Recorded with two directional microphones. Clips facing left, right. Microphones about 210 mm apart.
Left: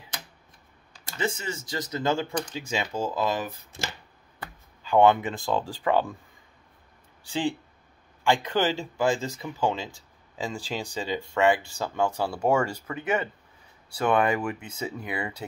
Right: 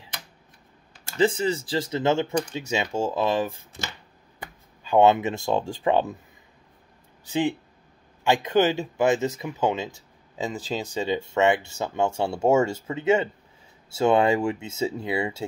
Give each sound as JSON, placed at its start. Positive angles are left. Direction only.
{"t": 0.9, "sound": "speech", "side_deg": -30}
{"t": 8.2, "sound": "speech", "side_deg": -20}